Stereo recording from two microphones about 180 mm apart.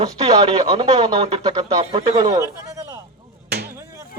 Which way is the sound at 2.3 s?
20° right (ahead or behind).